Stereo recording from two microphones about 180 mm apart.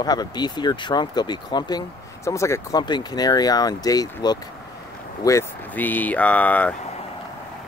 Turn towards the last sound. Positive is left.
turn(degrees=10)  # may be behind; listen again after turning